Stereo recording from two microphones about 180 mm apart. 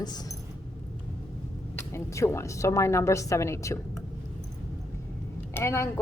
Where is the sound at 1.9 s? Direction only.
15° left (ahead or behind).